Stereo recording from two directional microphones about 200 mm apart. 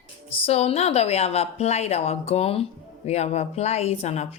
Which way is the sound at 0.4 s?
30° left (ahead or behind).